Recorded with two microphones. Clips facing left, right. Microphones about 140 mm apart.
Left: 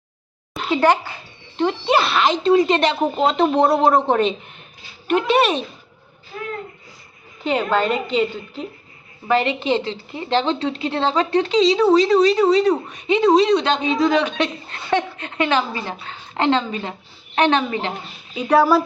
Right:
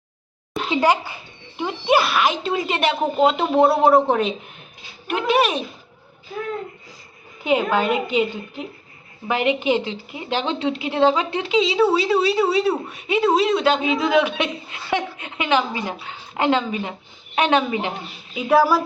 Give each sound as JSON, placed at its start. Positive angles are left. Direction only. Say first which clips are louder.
{"t": 0.7, "sound": "speech", "louder": "left 2 dB", "side_deg": -10}
{"t": 7.4, "sound": "speech", "louder": "even", "side_deg": -10}